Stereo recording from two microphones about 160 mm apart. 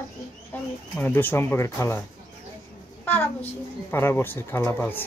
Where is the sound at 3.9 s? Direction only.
15° left (ahead or behind).